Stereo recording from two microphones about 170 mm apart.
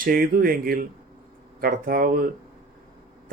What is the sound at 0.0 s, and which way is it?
Speech, 55° right (ahead or behind).